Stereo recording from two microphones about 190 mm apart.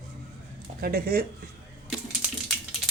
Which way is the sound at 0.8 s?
50° right (ahead or behind).